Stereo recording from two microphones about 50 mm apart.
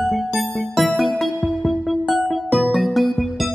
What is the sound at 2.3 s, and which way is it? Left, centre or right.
Music, centre.